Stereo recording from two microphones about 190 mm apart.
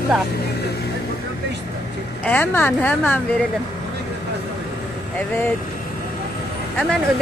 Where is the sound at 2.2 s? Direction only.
10° left (ahead or behind).